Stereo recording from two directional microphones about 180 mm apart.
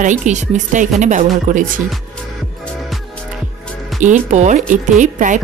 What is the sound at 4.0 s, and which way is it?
Speech, 45° right (ahead or behind).